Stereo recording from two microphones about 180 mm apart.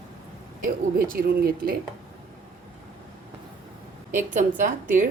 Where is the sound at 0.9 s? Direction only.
55° right (ahead or behind).